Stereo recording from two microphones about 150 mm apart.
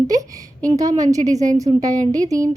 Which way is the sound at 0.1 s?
25° right (ahead or behind).